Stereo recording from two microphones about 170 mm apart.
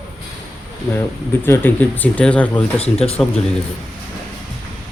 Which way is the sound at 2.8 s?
35° left (ahead or behind).